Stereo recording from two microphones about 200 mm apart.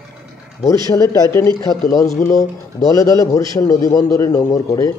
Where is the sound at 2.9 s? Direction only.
15° left (ahead or behind).